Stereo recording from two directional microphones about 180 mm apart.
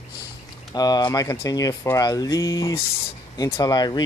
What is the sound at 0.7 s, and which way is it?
Speech, 20° left (ahead or behind).